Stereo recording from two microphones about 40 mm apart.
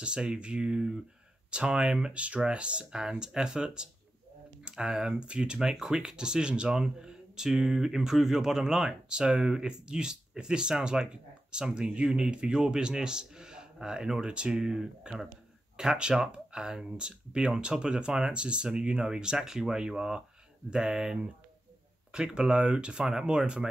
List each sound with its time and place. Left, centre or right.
0.0 s speech: right